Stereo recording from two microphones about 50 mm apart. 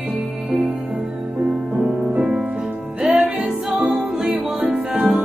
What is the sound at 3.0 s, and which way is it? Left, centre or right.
Music, right.